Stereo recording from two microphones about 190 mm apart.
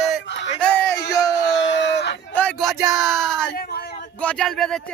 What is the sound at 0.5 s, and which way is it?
Speech, 5° left (ahead or behind).